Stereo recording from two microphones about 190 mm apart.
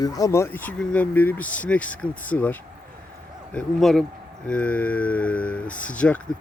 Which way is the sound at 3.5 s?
Centre (ahead or behind).